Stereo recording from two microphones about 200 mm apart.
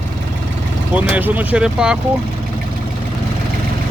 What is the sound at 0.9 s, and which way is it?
Speech, 10° right (ahead or behind).